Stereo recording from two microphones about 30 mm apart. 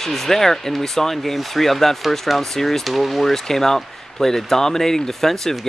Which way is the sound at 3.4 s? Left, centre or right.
Centre.